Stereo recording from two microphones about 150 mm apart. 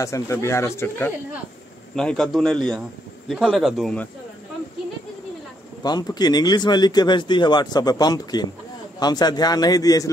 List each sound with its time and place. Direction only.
0.0 s a man's voice: 20° left (ahead or behind); by 4.0 s centre (ahead or behind)
5.8 s speech: 30° left (ahead or behind)